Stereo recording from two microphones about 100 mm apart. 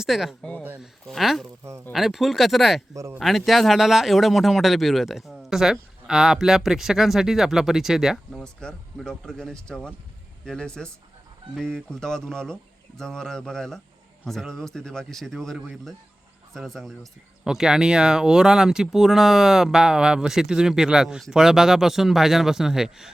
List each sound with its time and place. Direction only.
0.0 s speech: 5° right (ahead or behind)
2.9 s speech: 35° right (ahead or behind)
3.2 s speech: centre (ahead or behind)